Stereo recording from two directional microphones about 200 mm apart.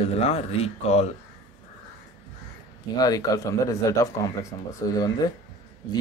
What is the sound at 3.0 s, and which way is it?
Speech, 20° left (ahead or behind).